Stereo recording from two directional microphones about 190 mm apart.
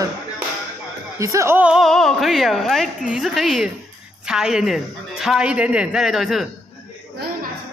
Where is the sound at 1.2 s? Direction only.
15° right (ahead or behind).